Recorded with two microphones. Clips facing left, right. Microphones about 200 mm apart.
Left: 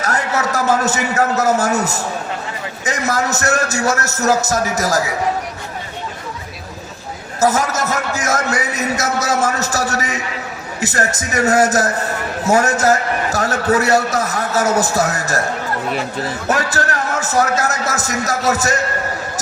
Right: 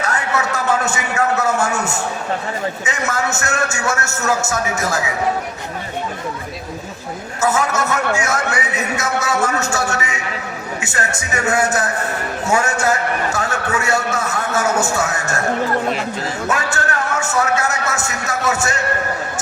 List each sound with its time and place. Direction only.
0.0 s a man's voice: 40° left (ahead or behind)
7.4 s a man's voice: 40° left (ahead or behind)